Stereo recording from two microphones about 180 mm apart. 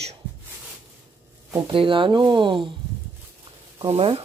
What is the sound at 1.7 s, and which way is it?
Speech, 30° right (ahead or behind).